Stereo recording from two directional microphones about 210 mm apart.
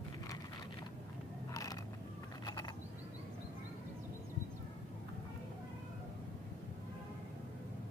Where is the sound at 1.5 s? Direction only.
15° left (ahead or behind).